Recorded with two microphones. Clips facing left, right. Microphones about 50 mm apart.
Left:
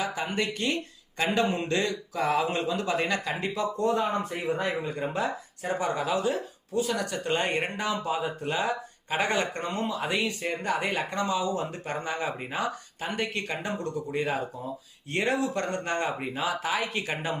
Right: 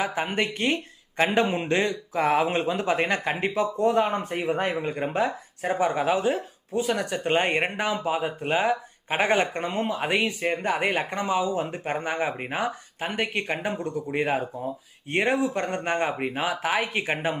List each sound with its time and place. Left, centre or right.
0.0 s speech: right
9.8 s speech: right
13.6 s speech: centre
14.1 s speech: right